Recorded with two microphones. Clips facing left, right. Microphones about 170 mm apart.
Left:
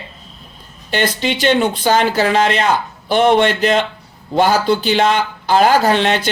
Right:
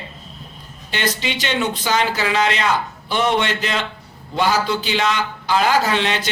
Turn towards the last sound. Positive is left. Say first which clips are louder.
# left 6 dB
turn(degrees=55)  # may be behind; listen again after turning